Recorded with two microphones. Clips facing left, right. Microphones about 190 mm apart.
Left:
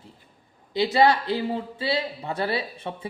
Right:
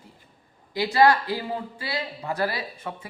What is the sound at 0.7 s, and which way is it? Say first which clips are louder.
Speech: even; 20° left (ahead or behind).